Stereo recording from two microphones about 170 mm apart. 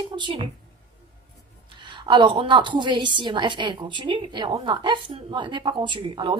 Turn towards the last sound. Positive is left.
turn(degrees=-30)  # may be behind; listen again after turning